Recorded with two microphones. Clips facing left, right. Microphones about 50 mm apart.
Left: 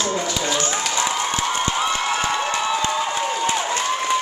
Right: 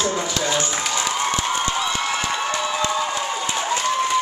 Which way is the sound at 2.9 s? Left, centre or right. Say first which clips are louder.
Left 1 dB; left.